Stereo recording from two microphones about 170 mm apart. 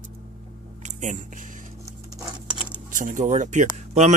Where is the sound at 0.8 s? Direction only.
45° right (ahead or behind).